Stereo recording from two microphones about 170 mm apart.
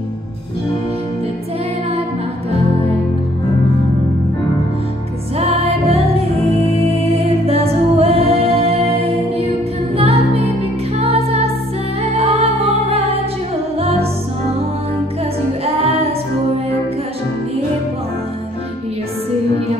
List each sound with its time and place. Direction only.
5.4 s music: 35° right (ahead or behind)
15.6 s music: 35° right (ahead or behind)